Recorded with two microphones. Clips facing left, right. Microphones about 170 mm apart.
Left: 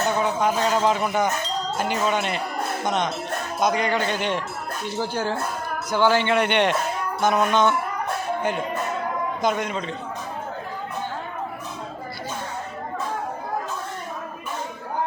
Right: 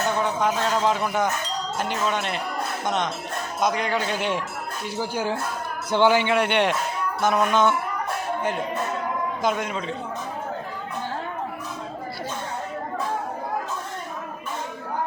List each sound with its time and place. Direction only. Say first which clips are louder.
0.2 s speech: left 1 dB; 5° left (ahead or behind)
5.9 s a man's voice: right 1 dB; 25° right (ahead or behind)
6.1 s speech: left 1 dB; 5° right (ahead or behind)